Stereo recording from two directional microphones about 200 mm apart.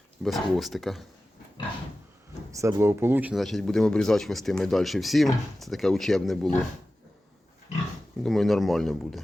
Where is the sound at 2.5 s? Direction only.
15° right (ahead or behind); by 6.5 s centre (ahead or behind).